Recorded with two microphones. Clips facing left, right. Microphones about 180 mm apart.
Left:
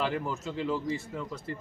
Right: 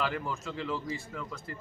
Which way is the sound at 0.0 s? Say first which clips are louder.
Left 2 dB; 20° left (ahead or behind).